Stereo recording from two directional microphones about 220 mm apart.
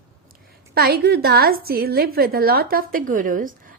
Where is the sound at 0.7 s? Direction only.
45° right (ahead or behind).